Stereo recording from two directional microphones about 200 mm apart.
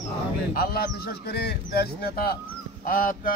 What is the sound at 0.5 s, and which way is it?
Speech, 50° left (ahead or behind).